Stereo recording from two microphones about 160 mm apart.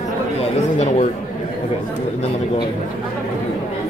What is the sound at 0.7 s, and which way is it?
Speech, 45° left (ahead or behind).